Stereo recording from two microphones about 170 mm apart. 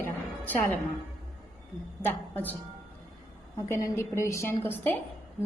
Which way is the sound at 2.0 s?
10° left (ahead or behind).